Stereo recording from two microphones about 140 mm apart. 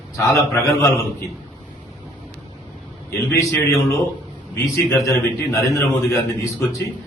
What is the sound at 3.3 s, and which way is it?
Speech, 20° left (ahead or behind).